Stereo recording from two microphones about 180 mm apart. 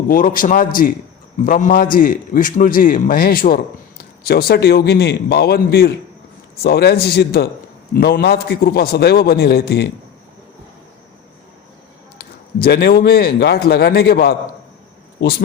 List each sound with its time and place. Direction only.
0.1 s a man's voice: 50° left (ahead or behind)
12.1 s a man's voice: 60° left (ahead or behind)